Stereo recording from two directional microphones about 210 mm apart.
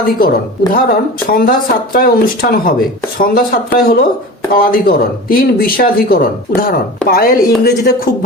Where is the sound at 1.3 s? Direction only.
45° left (ahead or behind).